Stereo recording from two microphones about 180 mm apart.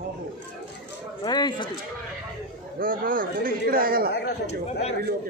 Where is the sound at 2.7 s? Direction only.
50° right (ahead or behind).